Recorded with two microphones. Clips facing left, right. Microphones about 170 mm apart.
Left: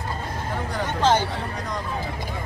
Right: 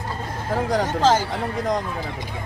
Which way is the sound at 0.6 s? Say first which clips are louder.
Right 9 dB; 90° right.